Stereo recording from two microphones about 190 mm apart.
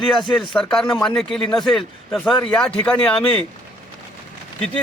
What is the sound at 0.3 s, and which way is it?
Speech, 5° left (ahead or behind).